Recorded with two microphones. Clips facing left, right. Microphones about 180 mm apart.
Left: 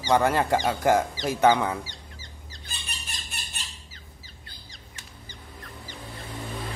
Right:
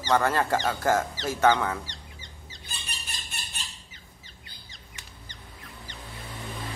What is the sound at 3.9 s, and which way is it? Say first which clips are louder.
Bird: left 2 dB; centre (ahead or behind).